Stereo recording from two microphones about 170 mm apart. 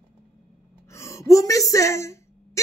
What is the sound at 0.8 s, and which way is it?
A woman's voice, 15° left (ahead or behind).